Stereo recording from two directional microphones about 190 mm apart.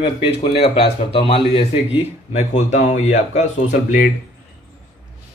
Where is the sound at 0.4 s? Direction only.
30° left (ahead or behind).